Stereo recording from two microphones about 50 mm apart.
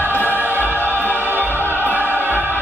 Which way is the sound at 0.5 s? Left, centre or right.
Left.